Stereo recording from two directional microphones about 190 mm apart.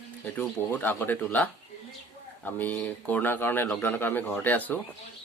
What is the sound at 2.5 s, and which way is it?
Speech, 10° left (ahead or behind).